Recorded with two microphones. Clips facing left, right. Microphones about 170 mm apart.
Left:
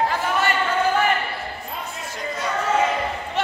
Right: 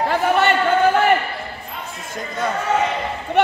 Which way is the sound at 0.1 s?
65° right (ahead or behind).